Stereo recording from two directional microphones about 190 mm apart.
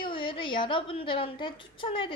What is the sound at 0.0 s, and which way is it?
A woman's voice, 25° left (ahead or behind).